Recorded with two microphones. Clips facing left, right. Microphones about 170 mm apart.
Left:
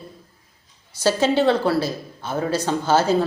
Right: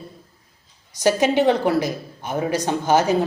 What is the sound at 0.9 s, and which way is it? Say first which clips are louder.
Speech: right 1 dB; 15° right (ahead or behind).